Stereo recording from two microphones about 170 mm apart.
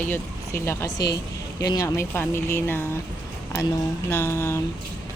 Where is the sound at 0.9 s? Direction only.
80° left.